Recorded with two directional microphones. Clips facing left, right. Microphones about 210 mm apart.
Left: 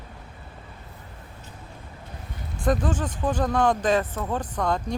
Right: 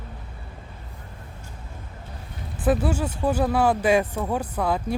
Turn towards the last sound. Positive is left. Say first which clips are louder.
# right 1 dB
turn(degrees=-5)  # may be behind; listen again after turning